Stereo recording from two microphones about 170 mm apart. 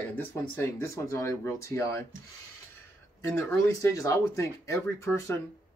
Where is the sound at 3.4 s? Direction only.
15° left (ahead or behind).